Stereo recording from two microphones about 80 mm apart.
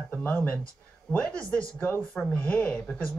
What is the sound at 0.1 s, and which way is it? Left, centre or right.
Speech, left.